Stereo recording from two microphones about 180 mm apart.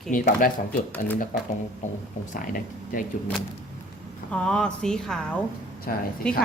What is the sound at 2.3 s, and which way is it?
Speech, 50° left (ahead or behind).